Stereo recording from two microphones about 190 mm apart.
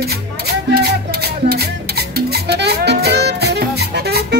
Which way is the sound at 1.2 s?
55° right (ahead or behind).